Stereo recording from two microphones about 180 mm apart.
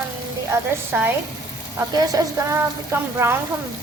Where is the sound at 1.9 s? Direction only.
15° right (ahead or behind).